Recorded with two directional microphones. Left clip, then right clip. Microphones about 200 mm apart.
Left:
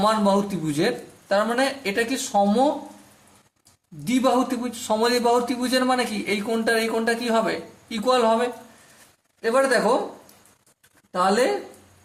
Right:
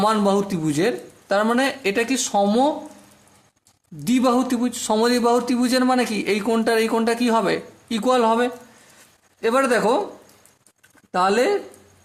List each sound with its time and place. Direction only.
0.0 s a man's voice: 40° right (ahead or behind)
4.0 s a man's voice: 45° right (ahead or behind)
11.1 s speech: 40° right (ahead or behind)